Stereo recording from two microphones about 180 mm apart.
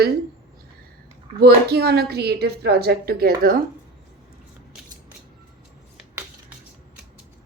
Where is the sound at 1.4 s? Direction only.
60° right (ahead or behind).